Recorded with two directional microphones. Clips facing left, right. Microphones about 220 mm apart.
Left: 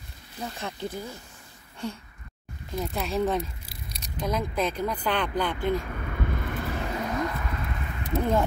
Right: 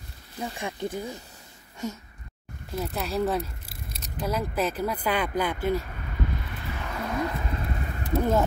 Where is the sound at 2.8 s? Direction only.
Centre (ahead or behind).